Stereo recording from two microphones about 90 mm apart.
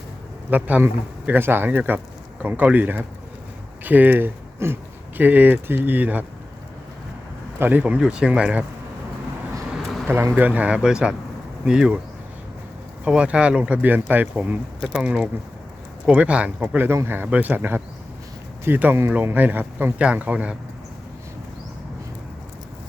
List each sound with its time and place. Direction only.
0.5 s speech: 20° right (ahead or behind)
7.6 s speech: 20° right (ahead or behind)
10.1 s speech: 25° right (ahead or behind); by 11.9 s 10° right (ahead or behind)
13.1 s speech: 10° right (ahead or behind)